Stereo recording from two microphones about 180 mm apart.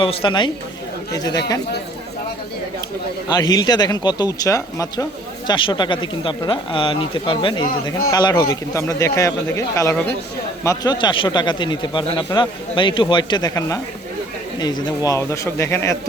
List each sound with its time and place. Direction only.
0.0 s speech: 30° left (ahead or behind)
3.2 s a man's voice: 20° left (ahead or behind)